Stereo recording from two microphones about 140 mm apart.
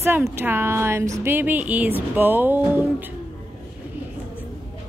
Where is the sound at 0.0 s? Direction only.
15° right (ahead or behind).